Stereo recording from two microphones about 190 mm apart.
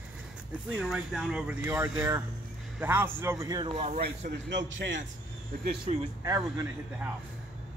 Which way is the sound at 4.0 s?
60° right (ahead or behind).